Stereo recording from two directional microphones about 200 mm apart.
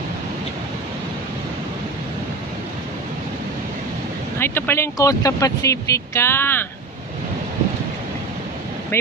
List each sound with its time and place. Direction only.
4.4 s speech: 10° left (ahead or behind)